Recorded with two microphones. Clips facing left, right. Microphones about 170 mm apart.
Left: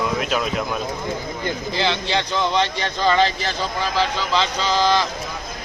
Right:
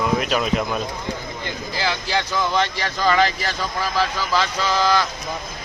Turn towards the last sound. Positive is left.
turn(degrees=25)  # may be behind; listen again after turning